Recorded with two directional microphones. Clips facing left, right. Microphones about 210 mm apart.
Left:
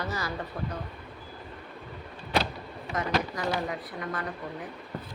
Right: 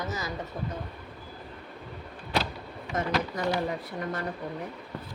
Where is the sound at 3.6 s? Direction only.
40° right (ahead or behind).